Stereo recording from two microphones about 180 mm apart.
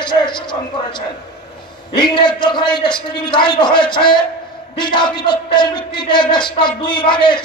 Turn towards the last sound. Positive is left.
turn(degrees=25)  # may be behind; listen again after turning